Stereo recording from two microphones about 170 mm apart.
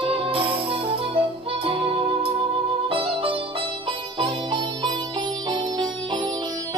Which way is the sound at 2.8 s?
30° right (ahead or behind).